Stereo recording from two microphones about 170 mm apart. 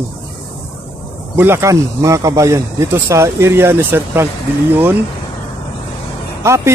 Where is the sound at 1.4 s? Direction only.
15° right (ahead or behind).